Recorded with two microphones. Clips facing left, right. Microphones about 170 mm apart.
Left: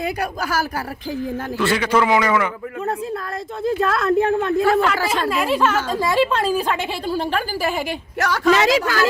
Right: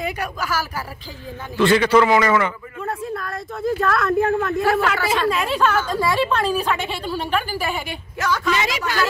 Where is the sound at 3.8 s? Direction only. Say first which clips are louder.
Left 1 dB; 25° left (ahead or behind).